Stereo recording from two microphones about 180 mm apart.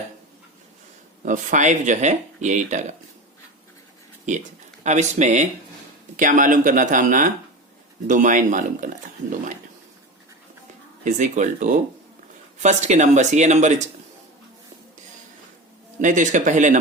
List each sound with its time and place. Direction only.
1.2 s speech: 45° right (ahead or behind)
4.3 s speech: 40° right (ahead or behind)
11.0 s speech: 45° right (ahead or behind)
16.0 s speech: 45° right (ahead or behind)